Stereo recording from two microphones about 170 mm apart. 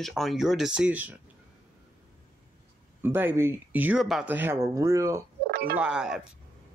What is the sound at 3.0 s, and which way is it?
Speech, 10° right (ahead or behind).